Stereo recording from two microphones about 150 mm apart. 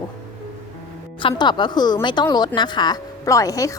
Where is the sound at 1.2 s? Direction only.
30° left (ahead or behind).